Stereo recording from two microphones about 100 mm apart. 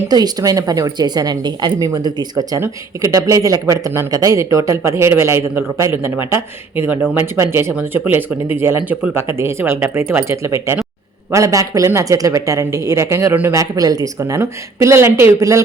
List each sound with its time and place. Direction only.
0.1 s a woman's voice: 40° right (ahead or behind); by 13.6 s 25° right (ahead or behind)
13.6 s a woman's voice: 35° right (ahead or behind)